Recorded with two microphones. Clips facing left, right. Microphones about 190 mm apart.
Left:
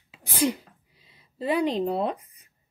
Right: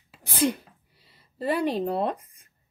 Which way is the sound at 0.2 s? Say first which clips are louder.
Even; 15° left (ahead or behind).